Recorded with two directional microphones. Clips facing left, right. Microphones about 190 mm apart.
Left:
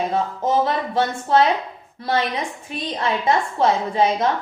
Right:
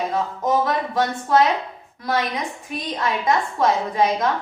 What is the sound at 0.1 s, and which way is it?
A woman's voice, 25° left (ahead or behind).